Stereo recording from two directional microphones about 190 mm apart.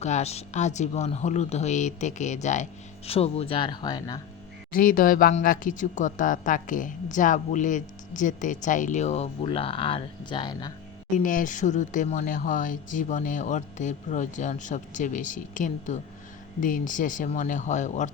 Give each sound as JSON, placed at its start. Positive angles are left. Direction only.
{"t": 0.0, "sound": "speech", "side_deg": 35}
{"t": 4.7, "sound": "speech", "side_deg": 50}
{"t": 11.2, "sound": "speech", "side_deg": 45}